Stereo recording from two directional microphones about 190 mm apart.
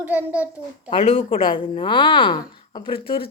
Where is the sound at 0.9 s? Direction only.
30° left (ahead or behind).